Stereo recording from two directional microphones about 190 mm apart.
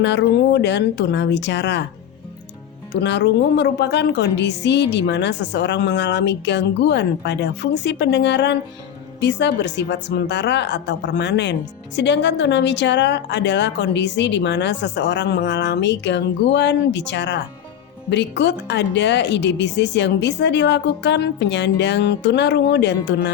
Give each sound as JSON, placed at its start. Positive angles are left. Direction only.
{"t": 0.0, "sound": "a woman's voice", "side_deg": 65}
{"t": 2.9, "sound": "a woman's voice", "side_deg": 65}